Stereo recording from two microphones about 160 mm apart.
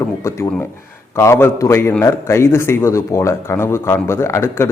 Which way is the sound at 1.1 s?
15° left (ahead or behind).